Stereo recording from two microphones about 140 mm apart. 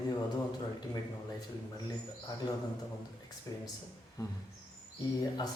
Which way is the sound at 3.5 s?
25° left (ahead or behind).